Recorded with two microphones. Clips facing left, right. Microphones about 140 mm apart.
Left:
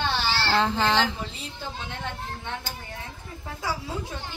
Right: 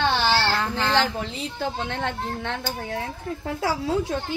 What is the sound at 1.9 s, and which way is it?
Speech, 85° right.